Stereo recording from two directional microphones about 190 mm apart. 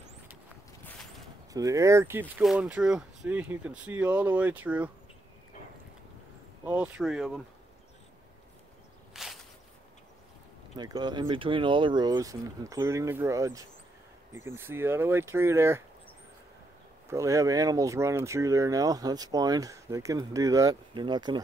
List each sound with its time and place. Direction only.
1.5 s speech: 20° right (ahead or behind)
6.6 s speech: 5° right (ahead or behind)
9.1 s a sound: centre (ahead or behind)
10.8 s speech: 20° right (ahead or behind)
17.1 s speech: 15° right (ahead or behind)